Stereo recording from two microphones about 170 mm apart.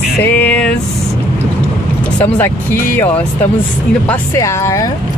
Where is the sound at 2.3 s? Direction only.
10° left (ahead or behind).